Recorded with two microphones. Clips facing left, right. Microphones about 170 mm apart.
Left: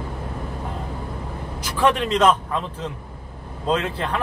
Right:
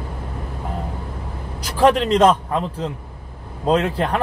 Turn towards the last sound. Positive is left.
turn(degrees=-40)  # may be behind; listen again after turning